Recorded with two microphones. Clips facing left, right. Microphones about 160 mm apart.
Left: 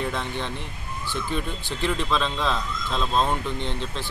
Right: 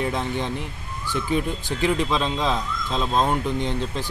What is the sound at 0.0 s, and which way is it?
Speech, 15° right (ahead or behind).